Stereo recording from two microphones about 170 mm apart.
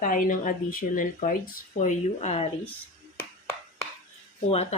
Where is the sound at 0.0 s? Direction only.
55° left (ahead or behind).